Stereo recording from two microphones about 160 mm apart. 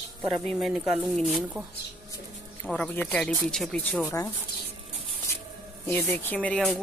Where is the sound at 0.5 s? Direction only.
Centre (ahead or behind).